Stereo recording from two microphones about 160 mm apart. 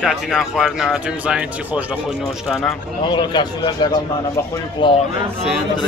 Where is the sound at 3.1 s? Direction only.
30° left (ahead or behind).